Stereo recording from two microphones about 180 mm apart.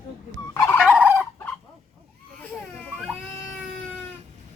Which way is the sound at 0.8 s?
5° right (ahead or behind).